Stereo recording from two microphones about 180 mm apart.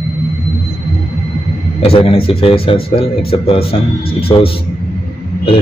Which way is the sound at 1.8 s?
30° left (ahead or behind).